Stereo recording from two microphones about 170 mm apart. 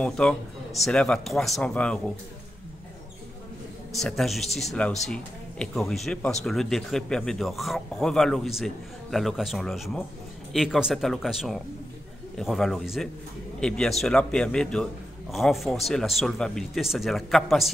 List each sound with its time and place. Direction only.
0.0 s speech: 5° left (ahead or behind)
3.9 s speech: centre (ahead or behind)